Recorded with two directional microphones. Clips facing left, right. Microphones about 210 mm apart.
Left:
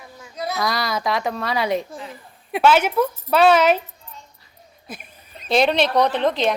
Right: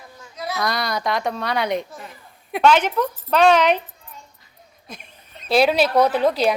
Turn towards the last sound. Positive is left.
turn(degrees=-5)  # may be behind; listen again after turning